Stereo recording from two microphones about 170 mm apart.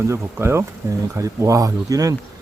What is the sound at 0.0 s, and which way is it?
Speech, 15° right (ahead or behind).